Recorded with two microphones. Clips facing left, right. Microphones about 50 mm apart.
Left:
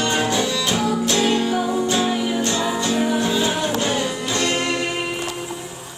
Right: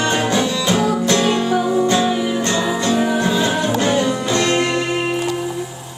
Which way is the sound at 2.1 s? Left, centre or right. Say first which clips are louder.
Right 3 dB; centre.